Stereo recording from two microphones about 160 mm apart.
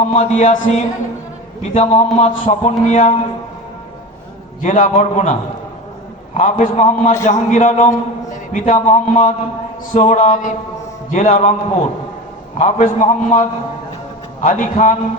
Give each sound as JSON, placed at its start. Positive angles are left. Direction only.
{"t": 0.0, "sound": "a man's voice", "side_deg": 45}
{"t": 4.6, "sound": "a man's voice", "side_deg": 55}